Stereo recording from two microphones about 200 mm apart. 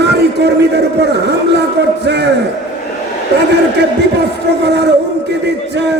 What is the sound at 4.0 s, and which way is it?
A man's voice, 55° right (ahead or behind).